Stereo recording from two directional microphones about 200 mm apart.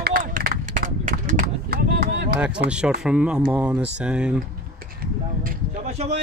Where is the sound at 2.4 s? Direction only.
5° right (ahead or behind).